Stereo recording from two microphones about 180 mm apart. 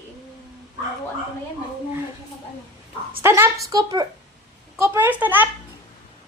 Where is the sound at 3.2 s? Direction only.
15° right (ahead or behind).